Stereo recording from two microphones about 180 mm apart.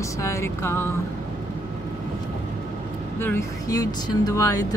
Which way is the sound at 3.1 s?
15° left (ahead or behind).